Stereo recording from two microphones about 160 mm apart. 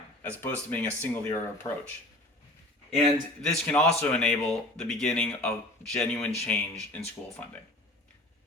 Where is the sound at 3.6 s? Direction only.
10° left (ahead or behind).